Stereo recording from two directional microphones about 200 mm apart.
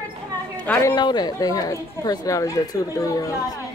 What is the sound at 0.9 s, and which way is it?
Speech, 20° left (ahead or behind).